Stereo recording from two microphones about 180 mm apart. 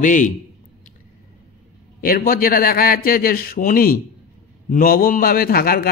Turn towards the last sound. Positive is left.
turn(degrees=55)  # may be behind; listen again after turning